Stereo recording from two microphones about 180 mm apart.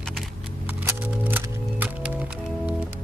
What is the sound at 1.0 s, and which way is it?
Music, 10° right (ahead or behind).